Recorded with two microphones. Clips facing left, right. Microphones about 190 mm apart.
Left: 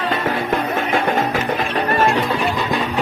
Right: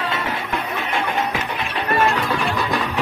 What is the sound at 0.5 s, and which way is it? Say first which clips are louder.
Music: left 6 dB; 45° left (ahead or behind).